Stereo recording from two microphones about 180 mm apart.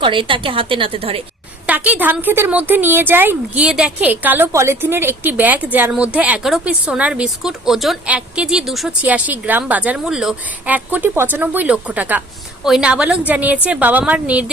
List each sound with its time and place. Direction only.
0.0 s a woman's voice: 30° right (ahead or behind)
1.6 s a woman's voice: 10° right (ahead or behind)